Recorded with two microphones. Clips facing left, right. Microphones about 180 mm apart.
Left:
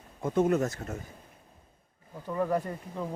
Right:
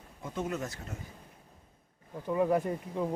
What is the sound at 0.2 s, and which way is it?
Speech, 50° left (ahead or behind).